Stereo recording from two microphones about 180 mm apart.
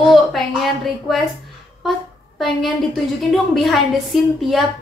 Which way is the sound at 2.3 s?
Centre (ahead or behind).